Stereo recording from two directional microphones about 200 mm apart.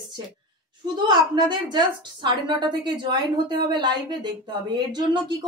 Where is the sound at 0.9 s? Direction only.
25° right (ahead or behind).